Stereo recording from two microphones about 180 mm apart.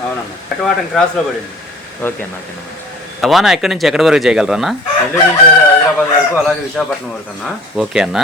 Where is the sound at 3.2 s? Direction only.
Centre (ahead or behind).